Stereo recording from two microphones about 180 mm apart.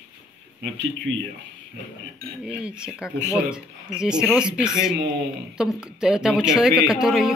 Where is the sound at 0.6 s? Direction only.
90° right.